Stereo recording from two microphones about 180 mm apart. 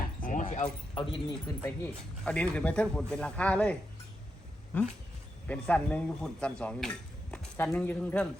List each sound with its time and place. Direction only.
0.0 s keys jangling: 45° left (ahead or behind)
0.9 s speech: 25° left (ahead or behind)
2.2 s speech: 5° left (ahead or behind)
5.5 s speech: 5° left (ahead or behind)